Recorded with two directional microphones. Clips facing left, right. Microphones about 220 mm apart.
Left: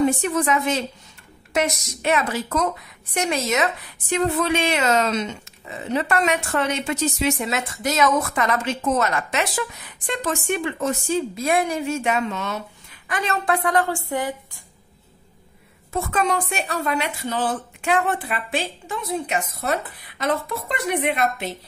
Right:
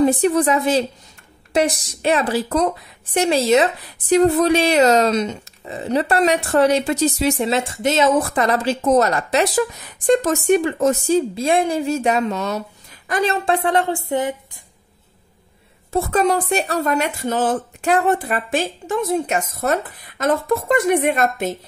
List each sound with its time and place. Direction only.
0.0 s a woman's voice: 35° right (ahead or behind)
15.9 s a woman's voice: 35° right (ahead or behind)